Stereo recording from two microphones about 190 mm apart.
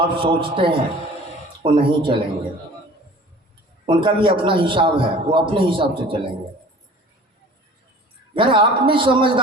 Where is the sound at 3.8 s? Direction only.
25° right (ahead or behind).